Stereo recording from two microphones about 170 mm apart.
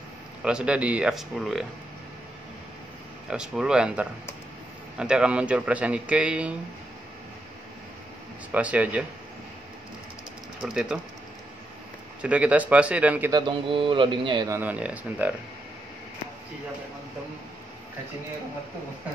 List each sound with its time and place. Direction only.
0.4 s speech: 5° right (ahead or behind)
3.3 s a man's voice: 5° right (ahead or behind)
8.5 s a man's voice: 10° right (ahead or behind)
10.6 s speech: 5° right (ahead or behind)
12.2 s a man's voice: 10° right (ahead or behind)
13.3 s a man's voice: 30° right (ahead or behind)
14.5 s a man's voice: 10° right (ahead or behind)